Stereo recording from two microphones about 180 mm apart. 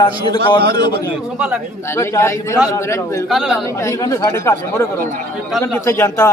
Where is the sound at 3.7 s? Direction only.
15° left (ahead or behind).